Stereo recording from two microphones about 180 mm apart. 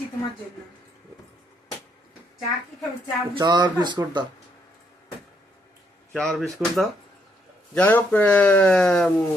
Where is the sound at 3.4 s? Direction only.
20° right (ahead or behind).